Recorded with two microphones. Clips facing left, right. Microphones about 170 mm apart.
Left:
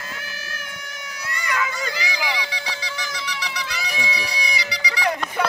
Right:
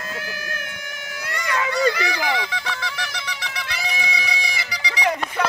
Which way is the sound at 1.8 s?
65° right (ahead or behind).